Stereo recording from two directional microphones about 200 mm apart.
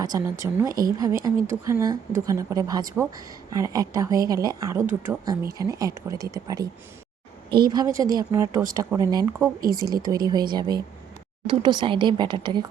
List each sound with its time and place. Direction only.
0.0 s speech: 15° right (ahead or behind)
0.7 s speech: 45° right (ahead or behind)
0.9 s speech: 15° right (ahead or behind)
9.8 s speech: 45° right (ahead or behind)
10.1 s speech: 20° right (ahead or behind)